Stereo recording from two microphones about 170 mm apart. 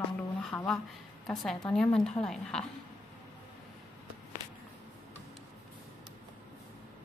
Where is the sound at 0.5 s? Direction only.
10° left (ahead or behind).